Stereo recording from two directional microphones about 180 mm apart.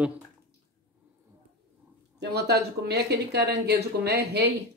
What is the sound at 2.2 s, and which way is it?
Speech, 65° right (ahead or behind).